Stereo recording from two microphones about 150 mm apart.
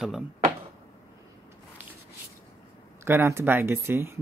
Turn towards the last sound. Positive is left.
turn(degrees=-15)  # may be behind; listen again after turning